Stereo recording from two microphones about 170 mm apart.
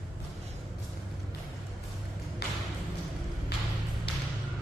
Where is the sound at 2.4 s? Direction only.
70° left (ahead or behind).